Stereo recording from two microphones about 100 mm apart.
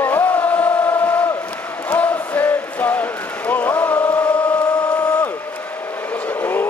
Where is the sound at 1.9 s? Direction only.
15° left (ahead or behind).